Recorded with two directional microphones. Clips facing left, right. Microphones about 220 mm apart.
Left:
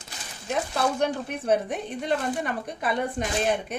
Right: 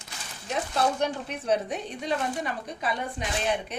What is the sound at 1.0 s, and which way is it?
A woman's voice, 55° left (ahead or behind).